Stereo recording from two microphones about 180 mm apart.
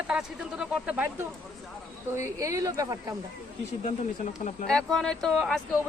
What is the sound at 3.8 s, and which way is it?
Speech, 40° left (ahead or behind).